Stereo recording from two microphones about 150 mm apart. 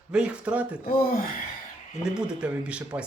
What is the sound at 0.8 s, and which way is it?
Speech, 70° left (ahead or behind).